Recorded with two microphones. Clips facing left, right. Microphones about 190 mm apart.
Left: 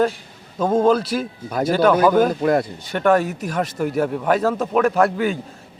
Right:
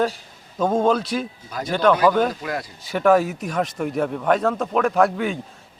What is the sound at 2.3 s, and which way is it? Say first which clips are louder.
Speech: left 10 dB; 55° left (ahead or behind).